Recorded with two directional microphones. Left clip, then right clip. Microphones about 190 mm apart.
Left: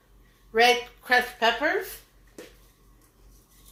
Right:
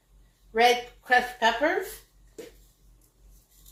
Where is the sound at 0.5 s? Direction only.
40° left (ahead or behind).